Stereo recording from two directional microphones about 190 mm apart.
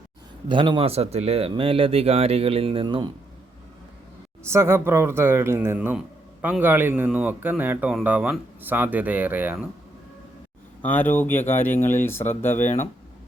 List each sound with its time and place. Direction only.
0.4 s speech: 25° right (ahead or behind)
4.4 s a man's voice: 15° right (ahead or behind)
10.8 s speech: 10° left (ahead or behind)
12.5 s speech: 40° left (ahead or behind)